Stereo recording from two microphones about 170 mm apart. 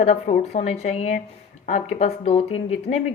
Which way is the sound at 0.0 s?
40° left (ahead or behind).